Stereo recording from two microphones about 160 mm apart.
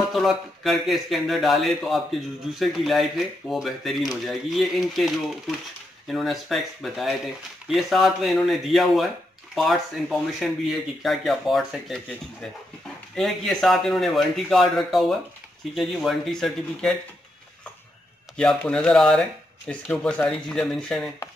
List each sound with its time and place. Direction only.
0.1 s speech: centre (ahead or behind)
18.3 s speech: 5° left (ahead or behind)